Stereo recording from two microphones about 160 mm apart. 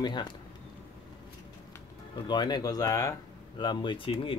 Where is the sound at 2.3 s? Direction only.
25° left (ahead or behind).